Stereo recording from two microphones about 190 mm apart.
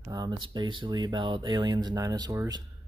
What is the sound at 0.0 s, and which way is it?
Speech, 20° right (ahead or behind).